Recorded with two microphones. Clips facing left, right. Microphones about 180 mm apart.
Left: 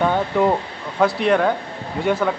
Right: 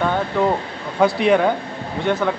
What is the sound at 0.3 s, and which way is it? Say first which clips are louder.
Speech: left 1 dB; 10° left (ahead or behind).